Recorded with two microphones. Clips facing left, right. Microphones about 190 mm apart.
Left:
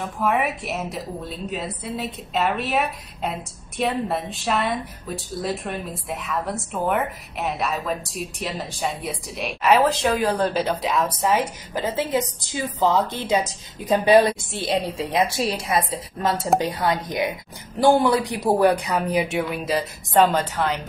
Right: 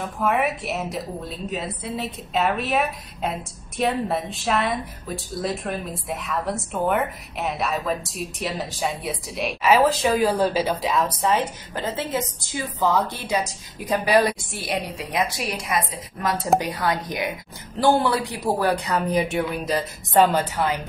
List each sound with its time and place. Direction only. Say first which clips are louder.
0.0 s a woman's voice: even; centre (ahead or behind); by 18.8 s 15° left (ahead or behind)
19.1 s a woman's voice: even; centre (ahead or behind)